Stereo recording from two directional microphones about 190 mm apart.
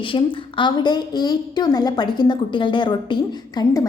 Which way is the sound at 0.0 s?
25° left (ahead or behind).